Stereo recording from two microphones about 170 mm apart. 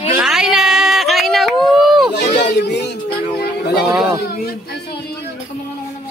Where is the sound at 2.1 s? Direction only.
90° left.